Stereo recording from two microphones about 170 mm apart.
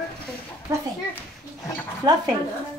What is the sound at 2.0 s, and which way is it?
Speech, 20° right (ahead or behind).